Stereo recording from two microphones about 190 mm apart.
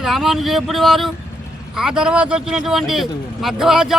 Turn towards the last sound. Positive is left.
turn(degrees=0)  # may be behind; listen again after turning